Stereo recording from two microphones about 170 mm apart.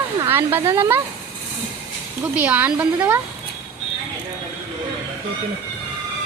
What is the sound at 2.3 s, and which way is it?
Speech, 10° right (ahead or behind).